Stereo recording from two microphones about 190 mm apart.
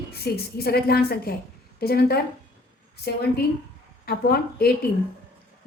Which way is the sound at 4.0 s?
50° left (ahead or behind).